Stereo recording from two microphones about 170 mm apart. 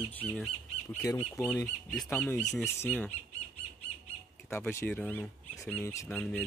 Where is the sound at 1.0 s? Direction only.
15° left (ahead or behind).